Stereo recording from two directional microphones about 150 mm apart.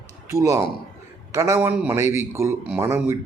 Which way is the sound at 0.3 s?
20° right (ahead or behind).